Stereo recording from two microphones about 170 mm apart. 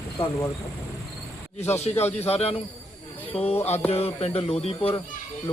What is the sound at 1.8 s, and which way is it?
Speech, 40° left (ahead or behind).